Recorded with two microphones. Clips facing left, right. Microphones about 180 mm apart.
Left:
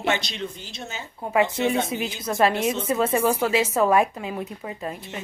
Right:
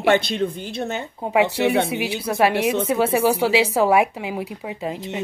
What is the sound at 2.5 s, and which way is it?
Speech, 65° right (ahead or behind).